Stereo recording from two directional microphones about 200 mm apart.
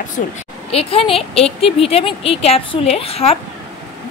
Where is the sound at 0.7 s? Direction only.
30° left (ahead or behind).